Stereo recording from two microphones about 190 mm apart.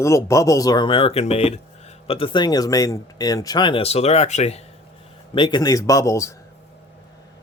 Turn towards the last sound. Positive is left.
turn(degrees=15)  # may be behind; listen again after turning